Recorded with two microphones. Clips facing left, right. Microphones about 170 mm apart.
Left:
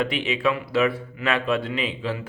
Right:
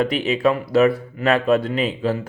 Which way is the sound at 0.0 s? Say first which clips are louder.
Right 5 dB; 40° right (ahead or behind).